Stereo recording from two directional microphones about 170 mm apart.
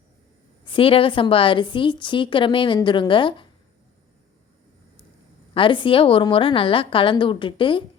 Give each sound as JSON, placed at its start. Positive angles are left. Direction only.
{"t": 0.6, "sound": "a woman's voice", "side_deg": 30}
{"t": 5.5, "sound": "a woman's voice", "side_deg": 30}